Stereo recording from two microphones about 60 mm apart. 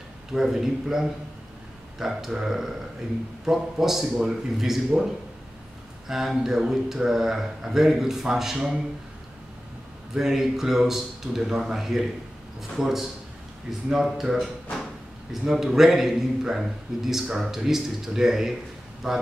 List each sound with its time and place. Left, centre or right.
0.3 s a man's voice: centre
10.1 s a man's voice: centre
15.4 s a man's voice: centre